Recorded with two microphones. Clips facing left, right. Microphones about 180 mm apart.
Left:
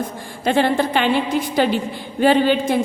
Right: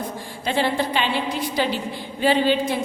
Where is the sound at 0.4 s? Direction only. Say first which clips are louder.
Left 5 dB; 50° left (ahead or behind).